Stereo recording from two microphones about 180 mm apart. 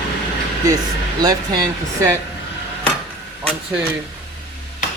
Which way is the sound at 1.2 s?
20° right (ahead or behind).